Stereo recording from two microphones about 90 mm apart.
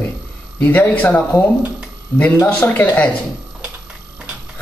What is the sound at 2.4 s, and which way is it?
Speech, 15° left (ahead or behind).